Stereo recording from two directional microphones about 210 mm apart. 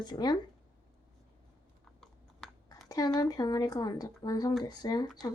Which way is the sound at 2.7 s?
15° left (ahead or behind).